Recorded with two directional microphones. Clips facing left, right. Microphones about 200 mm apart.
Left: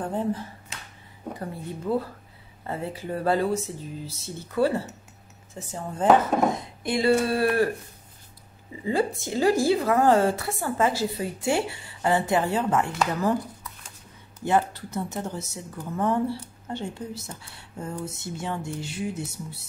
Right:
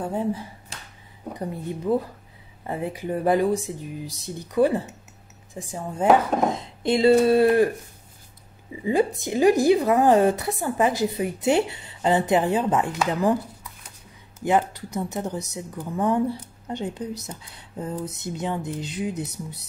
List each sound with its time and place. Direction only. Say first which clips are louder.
0.0 s a woman's voice: right 1 dB; 10° right (ahead or behind)
6.5 s speech: right 4 dB; 25° right (ahead or behind)
8.8 s a woman's voice: right 3 dB; 15° right (ahead or behind)
14.4 s a woman's voice: right 2 dB; 15° right (ahead or behind)